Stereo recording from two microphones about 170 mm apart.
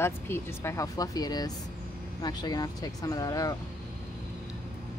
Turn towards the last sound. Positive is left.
turn(degrees=20)  # may be behind; listen again after turning